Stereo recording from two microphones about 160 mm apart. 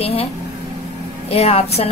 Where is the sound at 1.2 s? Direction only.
40° left (ahead or behind).